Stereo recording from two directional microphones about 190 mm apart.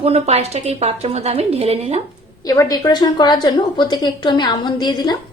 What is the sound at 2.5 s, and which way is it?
A woman's voice, 20° left (ahead or behind).